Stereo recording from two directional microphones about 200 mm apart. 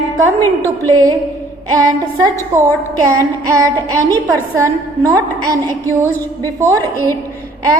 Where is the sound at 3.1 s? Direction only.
15° right (ahead or behind).